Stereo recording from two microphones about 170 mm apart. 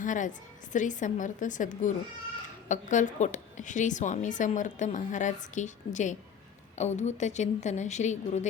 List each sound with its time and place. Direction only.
0.0 s a woman's voice: 50° left (ahead or behind)